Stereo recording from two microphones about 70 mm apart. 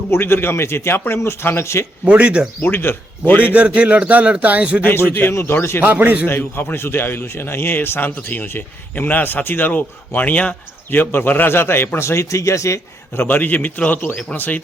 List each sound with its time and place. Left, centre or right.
0.1 s a man's voice: left
2.0 s speech: centre
2.6 s a man's voice: left
3.5 s speech: centre
4.8 s a man's voice: left
5.8 s speech: right
6.2 s a man's voice: left
13.1 s a man's voice: left